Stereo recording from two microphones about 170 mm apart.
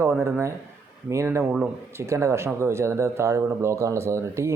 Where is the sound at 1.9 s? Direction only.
15° right (ahead or behind).